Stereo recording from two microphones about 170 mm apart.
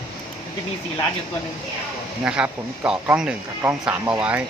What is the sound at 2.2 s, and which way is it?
Speech, 5° right (ahead or behind).